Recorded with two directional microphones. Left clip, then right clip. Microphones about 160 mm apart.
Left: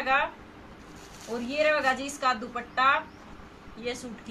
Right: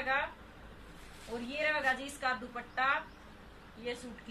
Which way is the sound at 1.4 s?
15° left (ahead or behind).